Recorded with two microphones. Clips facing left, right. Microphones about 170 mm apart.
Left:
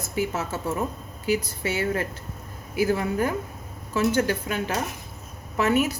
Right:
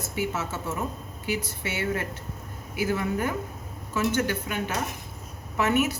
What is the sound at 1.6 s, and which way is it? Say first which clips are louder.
Speech: left 3 dB; 40° left (ahead or behind).